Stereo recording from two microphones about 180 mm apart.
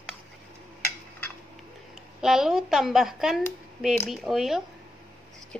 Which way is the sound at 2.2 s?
Centre (ahead or behind).